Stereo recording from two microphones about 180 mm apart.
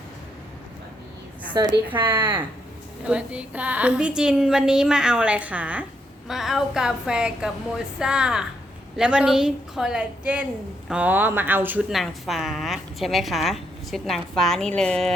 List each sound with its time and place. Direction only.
1.5 s a woman's voice: 20° right (ahead or behind); by 15.1 s 5° left (ahead or behind)